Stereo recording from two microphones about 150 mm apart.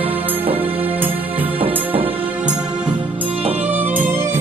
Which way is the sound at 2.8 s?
35° right (ahead or behind).